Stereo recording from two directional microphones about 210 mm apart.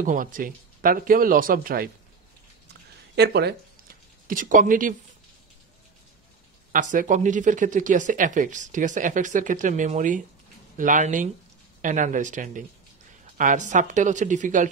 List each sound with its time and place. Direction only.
0.0 s speech: 40° right (ahead or behind)
3.2 s speech: 50° right (ahead or behind)
6.7 s speech: 40° right (ahead or behind)